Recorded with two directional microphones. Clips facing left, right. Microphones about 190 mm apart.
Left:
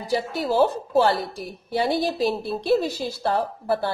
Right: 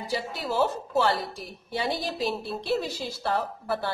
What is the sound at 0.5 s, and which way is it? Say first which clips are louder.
Speech: left 5 dB; 35° left (ahead or behind).